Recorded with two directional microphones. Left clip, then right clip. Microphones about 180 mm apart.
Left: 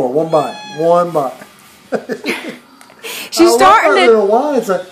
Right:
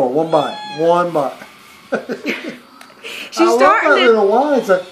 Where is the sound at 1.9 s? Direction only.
20° left (ahead or behind).